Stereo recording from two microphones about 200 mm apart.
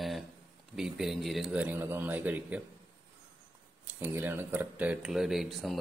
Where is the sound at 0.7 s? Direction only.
Centre (ahead or behind).